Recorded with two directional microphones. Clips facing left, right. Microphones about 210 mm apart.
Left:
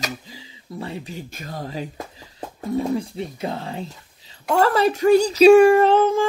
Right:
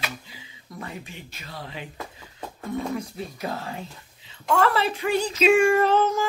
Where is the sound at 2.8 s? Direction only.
30° left (ahead or behind).